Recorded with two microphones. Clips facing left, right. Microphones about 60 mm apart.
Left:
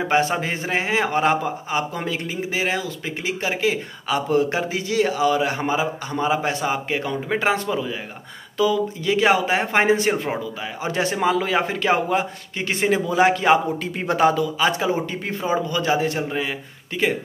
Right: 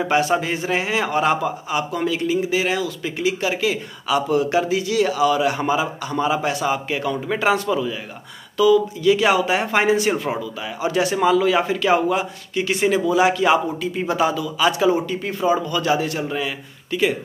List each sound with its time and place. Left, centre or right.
0.1 s a man's voice: left
14.6 s speech: left